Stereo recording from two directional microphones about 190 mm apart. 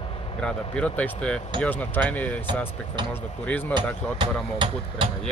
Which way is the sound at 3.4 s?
10° left (ahead or behind).